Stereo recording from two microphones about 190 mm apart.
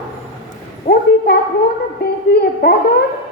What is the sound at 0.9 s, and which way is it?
Speech, 60° left (ahead or behind).